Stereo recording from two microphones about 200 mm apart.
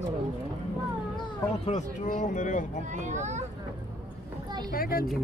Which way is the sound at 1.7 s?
40° left (ahead or behind).